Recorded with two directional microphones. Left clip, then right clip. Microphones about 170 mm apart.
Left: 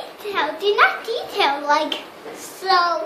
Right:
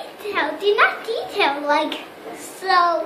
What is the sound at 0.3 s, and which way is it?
A child's voice, 5° right (ahead or behind).